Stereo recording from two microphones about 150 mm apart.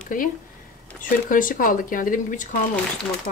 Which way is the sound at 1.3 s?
65° left (ahead or behind).